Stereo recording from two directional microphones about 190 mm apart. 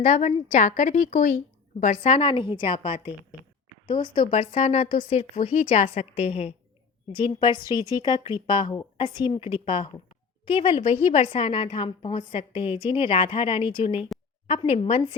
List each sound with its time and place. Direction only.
0.0 s speech: 35° left (ahead or behind)
2.0 s a woman's voice: 30° left (ahead or behind)